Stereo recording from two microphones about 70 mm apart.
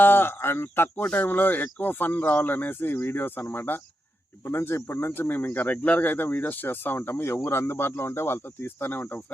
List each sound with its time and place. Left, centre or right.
0.0 s speech: left